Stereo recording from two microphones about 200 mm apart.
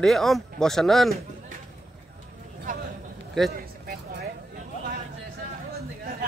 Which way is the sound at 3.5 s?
45° right (ahead or behind).